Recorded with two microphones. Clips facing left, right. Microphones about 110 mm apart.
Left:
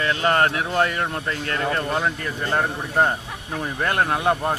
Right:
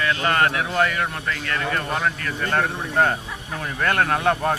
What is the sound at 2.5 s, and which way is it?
A man's voice, 15° left (ahead or behind).